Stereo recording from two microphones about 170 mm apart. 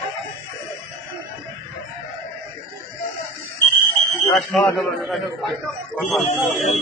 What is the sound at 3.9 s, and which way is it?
Fire alarm, centre (ahead or behind).